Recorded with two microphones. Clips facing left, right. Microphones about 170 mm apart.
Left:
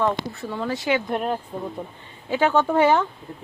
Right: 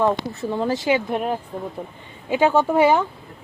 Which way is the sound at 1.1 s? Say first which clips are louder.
Right 1 dB; 10° right (ahead or behind).